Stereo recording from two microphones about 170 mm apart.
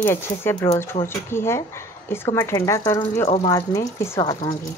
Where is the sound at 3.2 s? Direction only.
35° left (ahead or behind).